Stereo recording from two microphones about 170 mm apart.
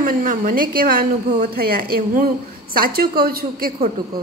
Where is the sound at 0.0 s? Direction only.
50° right (ahead or behind).